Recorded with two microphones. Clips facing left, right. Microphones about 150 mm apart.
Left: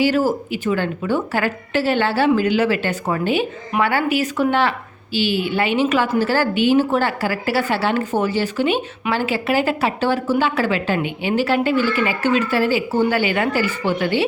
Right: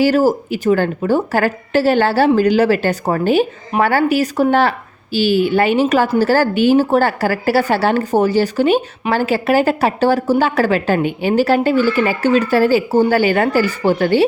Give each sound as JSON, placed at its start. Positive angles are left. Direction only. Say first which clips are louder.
{"t": 0.0, "sound": "a woman's voice", "louder": "right 4 dB", "side_deg": -40}